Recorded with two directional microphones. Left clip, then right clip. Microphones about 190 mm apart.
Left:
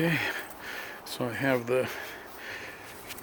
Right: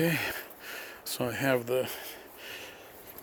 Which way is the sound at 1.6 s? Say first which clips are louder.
Left 2 dB; 20° right (ahead or behind).